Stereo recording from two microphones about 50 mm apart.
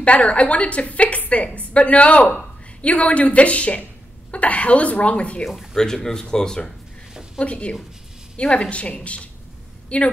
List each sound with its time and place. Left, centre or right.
0.0 s a woman's voice: left
5.4 s speech: centre
6.0 s speech: centre
7.3 s a woman's voice: left